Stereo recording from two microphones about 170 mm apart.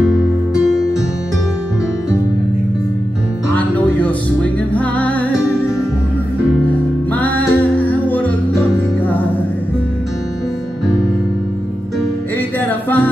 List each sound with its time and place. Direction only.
3.5 s music: 10° left (ahead or behind)
7.1 s music: 10° left (ahead or behind)
12.4 s music: 10° left (ahead or behind)